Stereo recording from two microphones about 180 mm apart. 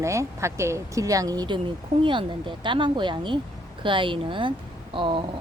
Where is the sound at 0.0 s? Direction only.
15° right (ahead or behind).